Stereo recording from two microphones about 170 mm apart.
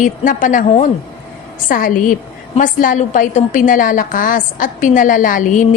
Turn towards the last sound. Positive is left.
turn(degrees=50)  # may be behind; listen again after turning